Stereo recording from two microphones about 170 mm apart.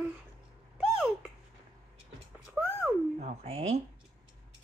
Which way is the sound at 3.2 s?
40° right (ahead or behind).